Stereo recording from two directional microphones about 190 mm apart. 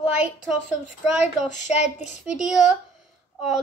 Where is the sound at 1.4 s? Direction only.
40° left (ahead or behind).